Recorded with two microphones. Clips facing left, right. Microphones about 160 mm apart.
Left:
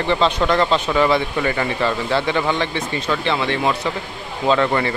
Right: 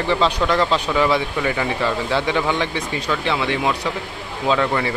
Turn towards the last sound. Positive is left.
turn(degrees=-5)  # may be behind; listen again after turning